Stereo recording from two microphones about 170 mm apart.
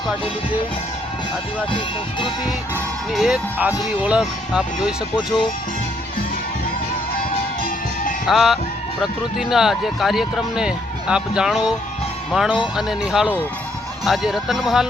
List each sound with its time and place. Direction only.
1.7 s speech: 30° left (ahead or behind)
3.1 s speech: 5° right (ahead or behind)
8.3 s speech: centre (ahead or behind)